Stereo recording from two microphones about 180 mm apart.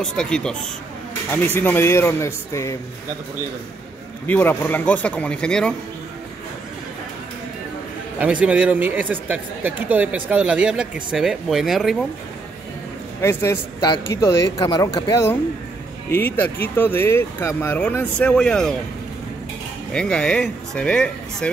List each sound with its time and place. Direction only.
0.0 s speech: 5° left (ahead or behind)
4.3 s speech: 10° left (ahead or behind)
8.2 s speech: 5° right (ahead or behind)
13.2 s speech: 15° left (ahead or behind)
19.9 s speech: 5° left (ahead or behind)